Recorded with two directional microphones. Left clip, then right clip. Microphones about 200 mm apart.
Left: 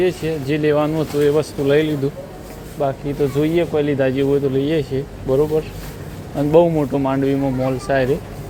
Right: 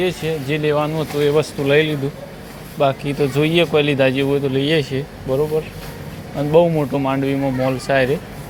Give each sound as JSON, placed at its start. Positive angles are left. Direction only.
{"t": 0.0, "sound": "speech", "side_deg": 15}
{"t": 1.3, "sound": "speech", "side_deg": 10}
{"t": 2.7, "sound": "speech", "side_deg": -5}
{"t": 5.3, "sound": "speech", "side_deg": 20}